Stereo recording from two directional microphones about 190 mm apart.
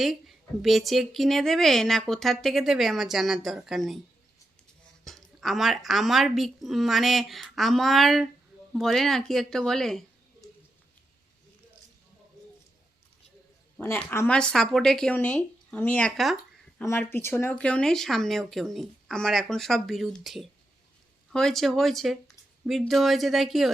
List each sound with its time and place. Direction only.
0.0 s a woman's voice: centre (ahead or behind)
5.0 s a woman's voice: centre (ahead or behind)
13.7 s a woman's voice: 10° left (ahead or behind)
16.9 s a woman's voice: 10° left (ahead or behind)